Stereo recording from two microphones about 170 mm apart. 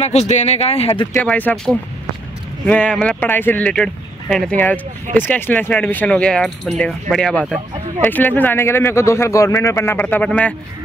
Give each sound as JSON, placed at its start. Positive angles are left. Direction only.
{"t": 0.0, "sound": "speech", "side_deg": 40}
{"t": 1.1, "sound": "speech", "side_deg": 10}